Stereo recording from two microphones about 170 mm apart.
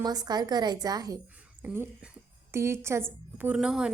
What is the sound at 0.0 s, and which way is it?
A woman's voice, 25° right (ahead or behind).